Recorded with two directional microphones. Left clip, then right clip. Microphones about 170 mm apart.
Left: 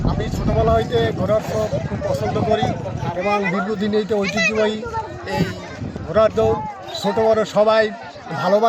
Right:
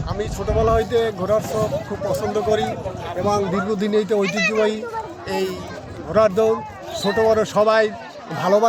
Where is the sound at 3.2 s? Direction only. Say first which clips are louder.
Even; 10° right (ahead or behind).